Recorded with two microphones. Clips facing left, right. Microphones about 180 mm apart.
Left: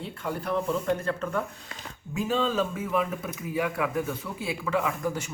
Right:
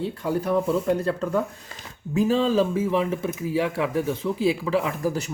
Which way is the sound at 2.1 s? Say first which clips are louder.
Right 6 dB; 35° right (ahead or behind).